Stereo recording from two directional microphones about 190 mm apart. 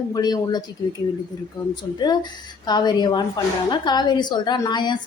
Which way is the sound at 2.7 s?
20° left (ahead or behind).